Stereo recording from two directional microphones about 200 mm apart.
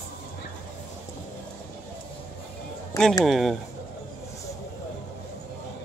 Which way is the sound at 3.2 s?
Centre (ahead or behind).